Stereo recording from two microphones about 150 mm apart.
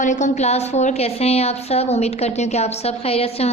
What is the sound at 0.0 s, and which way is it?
A woman's voice, 55° left (ahead or behind).